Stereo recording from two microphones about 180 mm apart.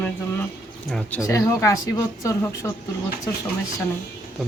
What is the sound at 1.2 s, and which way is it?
Speech, 15° left (ahead or behind).